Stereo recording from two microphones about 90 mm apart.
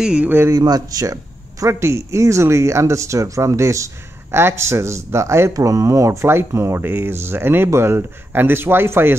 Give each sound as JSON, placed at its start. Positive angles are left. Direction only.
{"t": 0.0, "sound": "speech", "side_deg": -10}
{"t": 0.3, "sound": "speech", "side_deg": -25}
{"t": 0.6, "sound": "speech", "side_deg": -45}